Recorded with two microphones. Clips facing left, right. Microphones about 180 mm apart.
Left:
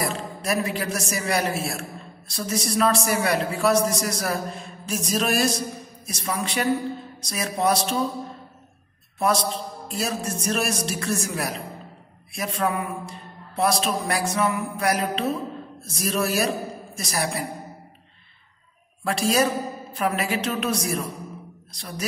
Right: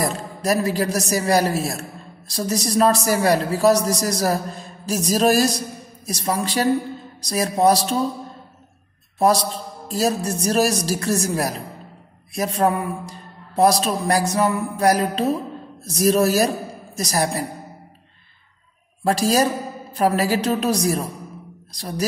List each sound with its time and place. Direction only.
0.0 s a man's voice: 35° right (ahead or behind)
9.2 s a man's voice: 35° right (ahead or behind)
19.0 s a man's voice: 40° right (ahead or behind)